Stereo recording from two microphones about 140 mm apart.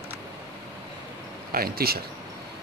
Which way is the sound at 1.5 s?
90° right.